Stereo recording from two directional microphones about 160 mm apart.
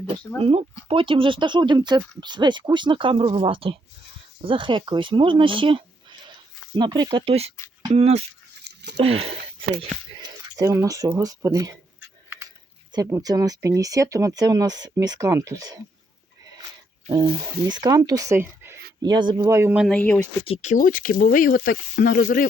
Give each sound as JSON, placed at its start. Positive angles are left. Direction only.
{"t": 0.4, "sound": "speech", "side_deg": -35}
{"t": 8.6, "sound": "a sound", "side_deg": -90}
{"t": 9.0, "sound": "speech", "side_deg": -40}
{"t": 10.6, "sound": "speech", "side_deg": -20}
{"t": 13.1, "sound": "speech", "side_deg": -20}
{"t": 17.1, "sound": "speech", "side_deg": -30}
{"t": 19.0, "sound": "speech", "side_deg": -25}
{"t": 19.9, "sound": "speech", "side_deg": 10}
{"t": 20.4, "sound": "speech", "side_deg": 40}
{"t": 22.2, "sound": "speech", "side_deg": 55}